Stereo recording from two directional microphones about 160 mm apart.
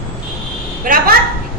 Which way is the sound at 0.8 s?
60° right (ahead or behind).